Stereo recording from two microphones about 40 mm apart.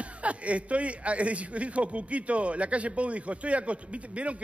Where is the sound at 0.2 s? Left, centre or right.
Right.